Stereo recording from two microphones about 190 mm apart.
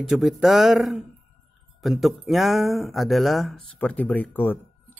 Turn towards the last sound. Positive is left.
turn(degrees=10)  # may be behind; listen again after turning